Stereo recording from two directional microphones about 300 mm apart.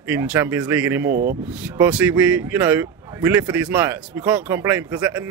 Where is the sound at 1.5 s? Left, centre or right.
Centre.